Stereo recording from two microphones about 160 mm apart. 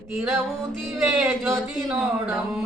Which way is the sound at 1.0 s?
5° right (ahead or behind).